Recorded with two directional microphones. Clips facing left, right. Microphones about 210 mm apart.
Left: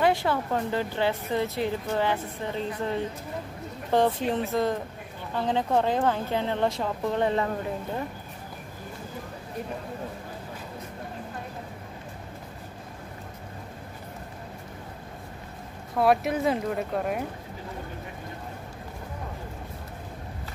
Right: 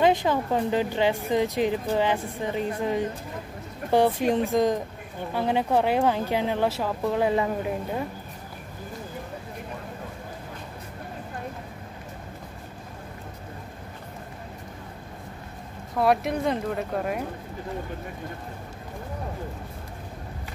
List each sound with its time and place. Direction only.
0.0 s speech: 15° right (ahead or behind)
16.0 s speech: centre (ahead or behind)